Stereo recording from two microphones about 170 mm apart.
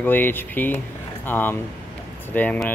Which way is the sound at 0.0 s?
10° left (ahead or behind).